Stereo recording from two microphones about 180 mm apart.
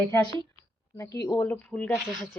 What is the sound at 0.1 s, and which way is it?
Speech, 15° left (ahead or behind).